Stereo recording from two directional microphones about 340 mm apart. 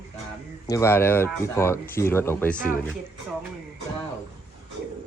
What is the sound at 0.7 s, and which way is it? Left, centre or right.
Speech, centre.